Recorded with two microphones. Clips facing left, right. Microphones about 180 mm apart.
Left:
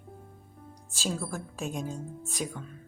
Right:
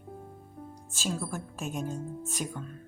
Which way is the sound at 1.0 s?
Centre (ahead or behind).